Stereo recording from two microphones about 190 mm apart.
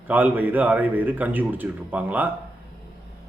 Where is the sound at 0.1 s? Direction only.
10° right (ahead or behind).